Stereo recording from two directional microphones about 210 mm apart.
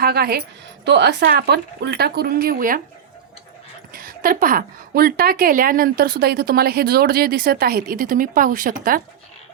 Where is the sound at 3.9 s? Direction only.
40° right (ahead or behind).